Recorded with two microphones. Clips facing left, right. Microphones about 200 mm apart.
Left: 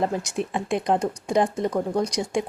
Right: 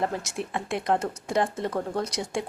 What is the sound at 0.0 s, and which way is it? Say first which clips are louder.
A woman's voice: left 4 dB; 15° left (ahead or behind).